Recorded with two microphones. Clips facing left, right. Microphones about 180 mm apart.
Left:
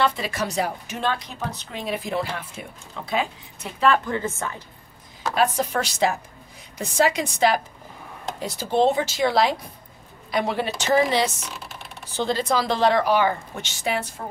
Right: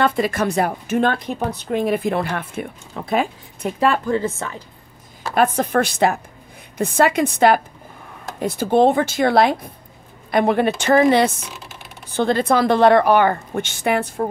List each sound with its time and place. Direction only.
0.0 s a woman's voice: 55° right (ahead or behind)
4.1 s a woman's voice: 30° right (ahead or behind)
5.3 s a woman's voice: 55° right (ahead or behind)